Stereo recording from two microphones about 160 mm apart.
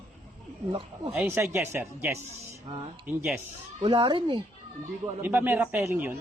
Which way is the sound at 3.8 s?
30° right (ahead or behind).